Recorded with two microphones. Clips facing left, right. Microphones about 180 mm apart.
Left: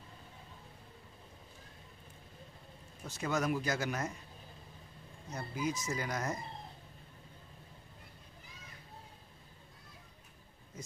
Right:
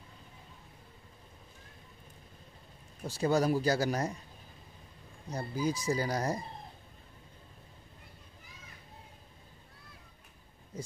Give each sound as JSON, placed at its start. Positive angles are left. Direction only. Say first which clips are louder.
{"t": 3.0, "sound": "speech", "louder": "right 6 dB", "side_deg": -30}
{"t": 5.3, "sound": "speech", "louder": "right 4 dB", "side_deg": -35}